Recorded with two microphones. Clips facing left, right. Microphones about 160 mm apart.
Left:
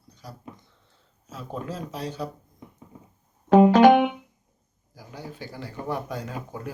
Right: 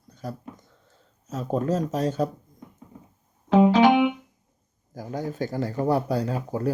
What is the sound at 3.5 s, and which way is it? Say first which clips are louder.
Music: left 3 dB; 45° left (ahead or behind).